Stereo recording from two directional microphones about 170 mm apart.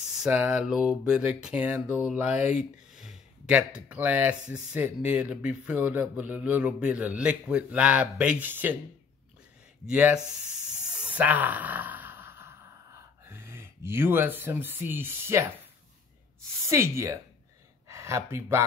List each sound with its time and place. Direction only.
0.1 s a man's voice: 5° right (ahead or behind)
9.8 s speech: 5° right (ahead or behind)
10.9 s a sound: 10° right (ahead or behind)
16.6 s a man's voice: 15° right (ahead or behind)